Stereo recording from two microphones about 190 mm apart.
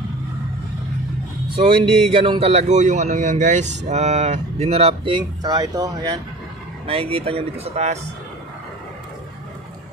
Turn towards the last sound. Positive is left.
turn(degrees=-35)  # may be behind; listen again after turning